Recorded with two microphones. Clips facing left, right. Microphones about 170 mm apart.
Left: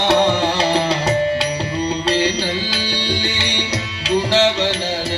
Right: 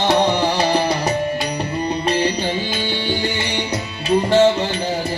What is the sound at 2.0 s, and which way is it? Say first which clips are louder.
Music: even; 85° left.